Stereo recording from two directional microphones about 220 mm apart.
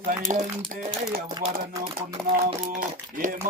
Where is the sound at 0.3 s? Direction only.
35° right (ahead or behind).